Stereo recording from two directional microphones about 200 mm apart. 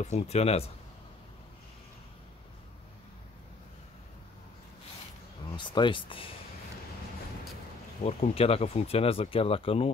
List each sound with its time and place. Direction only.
0.0 s speech: 35° left (ahead or behind)
5.5 s speech: 25° left (ahead or behind)
8.0 s speech: 30° left (ahead or behind)